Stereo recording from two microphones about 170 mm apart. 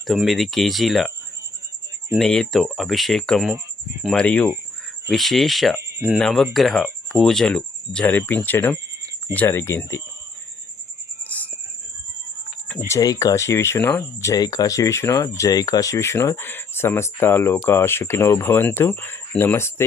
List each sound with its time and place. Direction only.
0.1 s speech: centre (ahead or behind)
2.1 s speech: 5° left (ahead or behind)
5.7 s speech: 10° right (ahead or behind)
6.1 s speech: centre (ahead or behind)
11.2 s music: 10° left (ahead or behind)
12.9 s speech: 20° left (ahead or behind)